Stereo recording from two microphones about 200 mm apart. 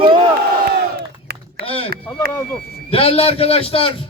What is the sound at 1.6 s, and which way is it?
Speech, 30° left (ahead or behind).